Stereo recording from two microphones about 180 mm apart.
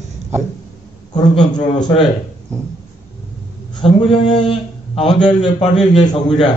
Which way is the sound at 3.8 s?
30° left (ahead or behind).